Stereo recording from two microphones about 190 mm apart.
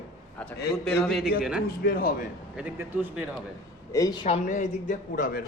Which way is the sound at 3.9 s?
20° left (ahead or behind).